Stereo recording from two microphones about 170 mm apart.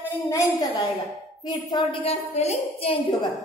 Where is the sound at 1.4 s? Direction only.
25° left (ahead or behind).